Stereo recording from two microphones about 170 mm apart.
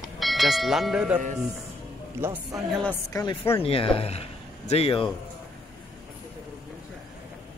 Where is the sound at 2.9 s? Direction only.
20° left (ahead or behind).